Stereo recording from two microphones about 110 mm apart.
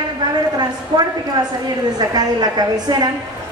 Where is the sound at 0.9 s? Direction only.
40° right (ahead or behind).